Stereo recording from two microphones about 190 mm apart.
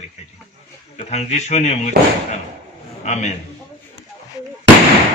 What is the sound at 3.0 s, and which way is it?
Speech, 40° left (ahead or behind).